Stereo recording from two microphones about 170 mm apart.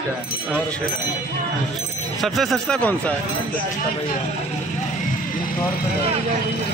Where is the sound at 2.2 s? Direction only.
Centre (ahead or behind).